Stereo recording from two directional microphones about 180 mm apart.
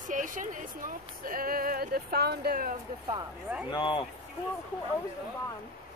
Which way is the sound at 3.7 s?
25° left (ahead or behind).